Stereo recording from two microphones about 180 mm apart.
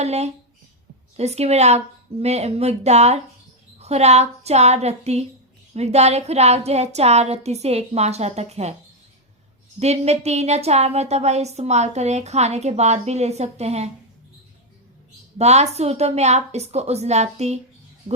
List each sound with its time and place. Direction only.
0.0 s a woman's voice: 35° right (ahead or behind)
9.8 s a woman's voice: 35° right (ahead or behind)
15.4 s a woman's voice: 40° right (ahead or behind)